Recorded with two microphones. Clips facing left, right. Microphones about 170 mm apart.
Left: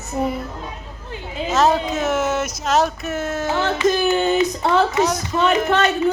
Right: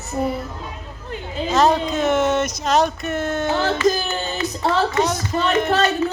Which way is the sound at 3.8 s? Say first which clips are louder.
Left 3 dB; 20° left (ahead or behind).